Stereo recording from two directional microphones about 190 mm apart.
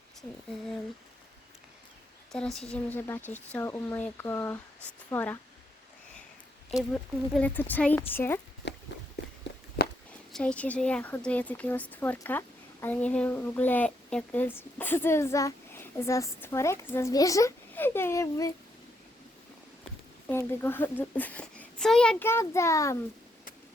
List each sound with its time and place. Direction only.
2.3 s speech: centre (ahead or behind)
6.9 s speech: 5° left (ahead or behind)
8.6 s a sound: 65° left (ahead or behind)
9.8 s a sound: 55° left (ahead or behind)
10.3 s speech: 5° left (ahead or behind)
20.3 s speech: 10° left (ahead or behind)